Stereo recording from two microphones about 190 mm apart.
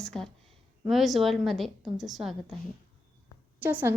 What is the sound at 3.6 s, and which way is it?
Speech, 10° right (ahead or behind).